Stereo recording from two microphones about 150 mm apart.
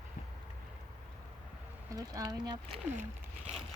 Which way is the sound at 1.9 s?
25° right (ahead or behind).